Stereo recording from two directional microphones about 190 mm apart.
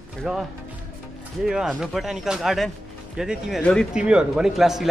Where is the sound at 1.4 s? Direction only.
5° right (ahead or behind).